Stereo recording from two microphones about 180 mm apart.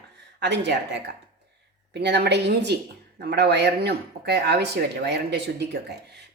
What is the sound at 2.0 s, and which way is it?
Speech, 70° right (ahead or behind).